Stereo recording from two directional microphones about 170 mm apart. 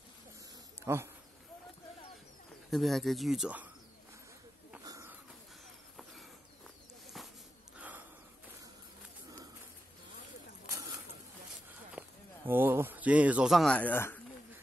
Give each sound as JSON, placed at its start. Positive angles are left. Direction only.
{"t": 0.7, "sound": "speech", "side_deg": -15}
{"t": 2.7, "sound": "speech", "side_deg": 0}
{"t": 4.8, "sound": "insect", "side_deg": -20}
{"t": 7.2, "sound": "a sound", "side_deg": 0}
{"t": 12.0, "sound": "a sound", "side_deg": -10}
{"t": 12.4, "sound": "speech", "side_deg": -10}